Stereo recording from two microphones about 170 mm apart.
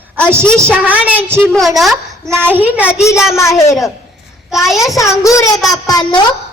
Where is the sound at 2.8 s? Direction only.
15° left (ahead or behind).